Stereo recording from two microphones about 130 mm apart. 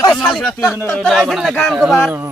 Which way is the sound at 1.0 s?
Centre (ahead or behind).